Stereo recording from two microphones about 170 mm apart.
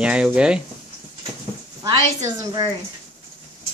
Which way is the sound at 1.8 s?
25° right (ahead or behind).